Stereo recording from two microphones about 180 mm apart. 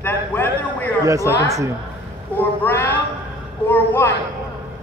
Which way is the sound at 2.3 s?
10° left (ahead or behind).